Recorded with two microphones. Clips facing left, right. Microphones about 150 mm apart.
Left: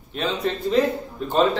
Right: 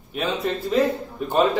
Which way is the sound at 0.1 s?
5° right (ahead or behind).